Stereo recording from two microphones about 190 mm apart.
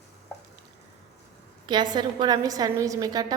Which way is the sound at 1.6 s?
25° right (ahead or behind).